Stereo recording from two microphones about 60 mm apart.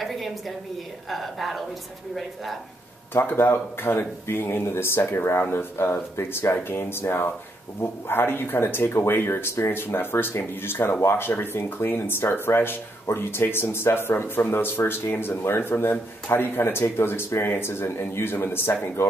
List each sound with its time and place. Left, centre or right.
0.0 s a woman's voice: centre
3.1 s speech: left